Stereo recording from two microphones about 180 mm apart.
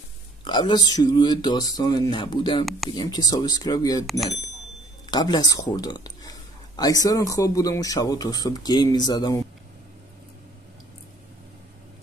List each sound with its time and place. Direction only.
0.4 s speech: 25° left (ahead or behind)
4.0 s speech: centre (ahead or behind)
5.1 s speech: 20° left (ahead or behind)